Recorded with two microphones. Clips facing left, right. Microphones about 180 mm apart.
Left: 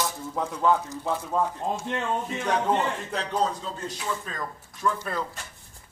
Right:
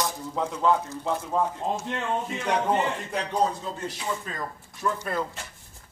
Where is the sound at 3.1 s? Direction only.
10° right (ahead or behind).